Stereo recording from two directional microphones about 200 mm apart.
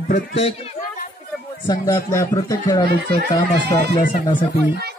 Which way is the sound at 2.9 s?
50° right (ahead or behind).